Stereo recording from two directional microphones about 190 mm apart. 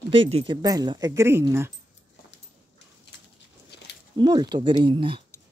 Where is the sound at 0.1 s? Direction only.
30° right (ahead or behind); by 1.7 s 15° right (ahead or behind).